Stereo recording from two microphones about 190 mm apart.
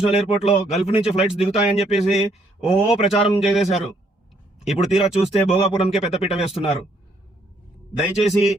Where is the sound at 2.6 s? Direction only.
30° left (ahead or behind).